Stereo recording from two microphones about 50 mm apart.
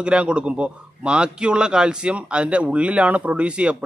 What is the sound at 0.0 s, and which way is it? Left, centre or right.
A man's voice, right.